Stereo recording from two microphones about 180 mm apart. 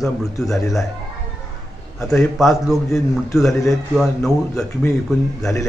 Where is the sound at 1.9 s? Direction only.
Centre (ahead or behind).